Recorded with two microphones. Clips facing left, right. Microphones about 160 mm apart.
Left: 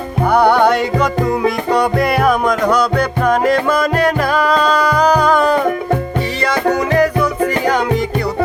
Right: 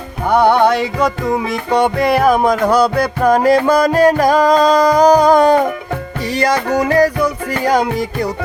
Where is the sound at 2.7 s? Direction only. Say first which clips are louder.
Right 2 dB; 35° right (ahead or behind).